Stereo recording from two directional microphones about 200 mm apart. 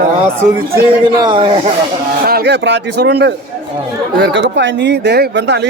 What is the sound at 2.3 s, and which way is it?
A man's voice, 55° right (ahead or behind).